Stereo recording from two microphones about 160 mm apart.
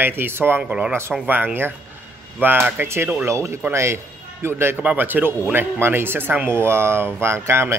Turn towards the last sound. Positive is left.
turn(degrees=-15)  # may be behind; listen again after turning